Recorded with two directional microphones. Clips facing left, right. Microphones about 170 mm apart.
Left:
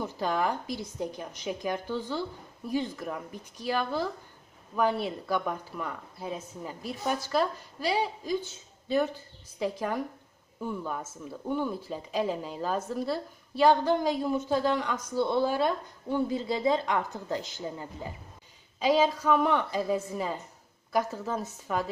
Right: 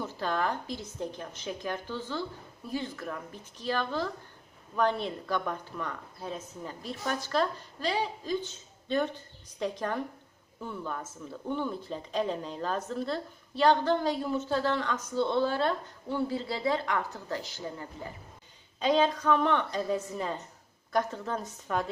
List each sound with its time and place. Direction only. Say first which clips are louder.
0.0 s speech: left 2 dB; 15° left (ahead or behind)
18.8 s speech: left 1 dB; 5° left (ahead or behind)